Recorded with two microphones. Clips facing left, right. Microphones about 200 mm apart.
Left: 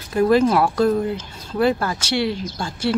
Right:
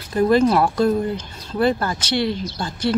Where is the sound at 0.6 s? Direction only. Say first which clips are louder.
Even; 5° right (ahead or behind).